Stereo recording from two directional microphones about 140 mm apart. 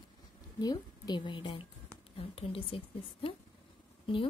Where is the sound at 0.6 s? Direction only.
30° left (ahead or behind).